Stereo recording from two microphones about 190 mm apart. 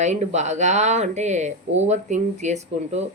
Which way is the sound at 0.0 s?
35° right (ahead or behind).